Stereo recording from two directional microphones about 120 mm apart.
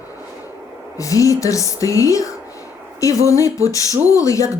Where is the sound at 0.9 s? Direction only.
25° left (ahead or behind).